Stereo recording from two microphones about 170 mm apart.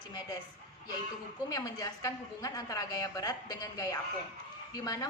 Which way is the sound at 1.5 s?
20° left (ahead or behind).